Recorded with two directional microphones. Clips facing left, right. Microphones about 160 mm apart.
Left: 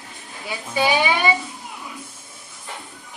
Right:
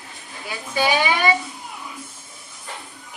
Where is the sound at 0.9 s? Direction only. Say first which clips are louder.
Even; 15° left (ahead or behind).